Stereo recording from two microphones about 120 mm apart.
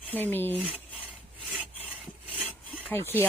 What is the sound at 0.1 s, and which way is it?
Speech, 15° left (ahead or behind).